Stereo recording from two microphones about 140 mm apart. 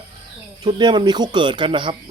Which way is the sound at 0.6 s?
35° right (ahead or behind).